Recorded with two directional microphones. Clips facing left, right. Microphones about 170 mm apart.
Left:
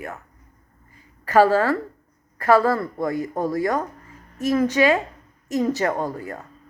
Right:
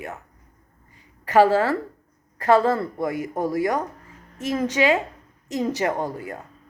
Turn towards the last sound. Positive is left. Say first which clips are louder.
# left 1 dB
turn(degrees=-15)  # may be behind; listen again after turning